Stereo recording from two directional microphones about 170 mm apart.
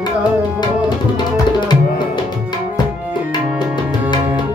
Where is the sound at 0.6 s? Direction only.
25° left (ahead or behind).